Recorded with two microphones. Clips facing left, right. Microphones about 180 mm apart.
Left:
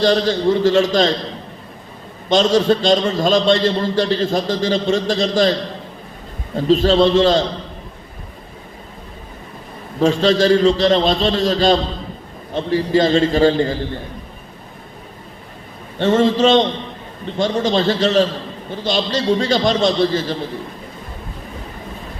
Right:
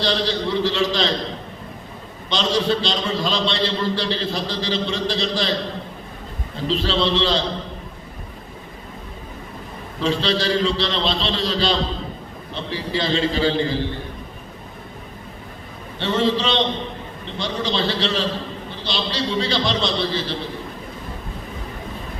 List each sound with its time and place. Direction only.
0.0 s a man's voice: 45° left (ahead or behind)
2.3 s a man's voice: 45° left (ahead or behind)
6.7 s a man's voice: 45° left (ahead or behind)
10.0 s a man's voice: 45° left (ahead or behind)
16.0 s a man's voice: 45° left (ahead or behind)